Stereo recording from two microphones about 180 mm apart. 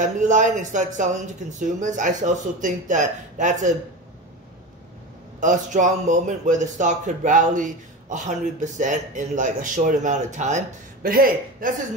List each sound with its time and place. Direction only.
0.0 s speech: 45° right (ahead or behind)
5.4 s speech: 45° right (ahead or behind)